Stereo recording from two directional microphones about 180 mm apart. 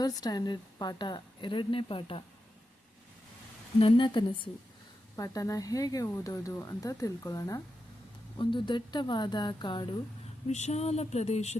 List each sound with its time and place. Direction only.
0.2 s speech: 20° left (ahead or behind)
3.8 s speech: 30° left (ahead or behind)
10.5 s speech: 40° left (ahead or behind)